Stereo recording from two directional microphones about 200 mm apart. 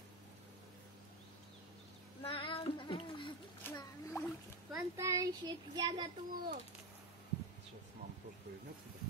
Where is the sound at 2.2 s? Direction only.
25° left (ahead or behind).